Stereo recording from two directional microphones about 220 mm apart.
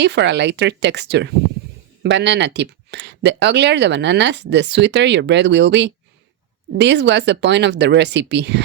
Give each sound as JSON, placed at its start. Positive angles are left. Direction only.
{"t": 0.0, "sound": "speech", "side_deg": -50}